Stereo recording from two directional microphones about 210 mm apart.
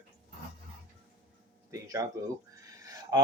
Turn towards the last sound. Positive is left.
turn(degrees=-15)  # may be behind; listen again after turning